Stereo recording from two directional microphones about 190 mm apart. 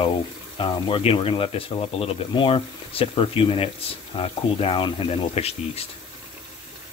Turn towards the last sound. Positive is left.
turn(degrees=30)  # may be behind; listen again after turning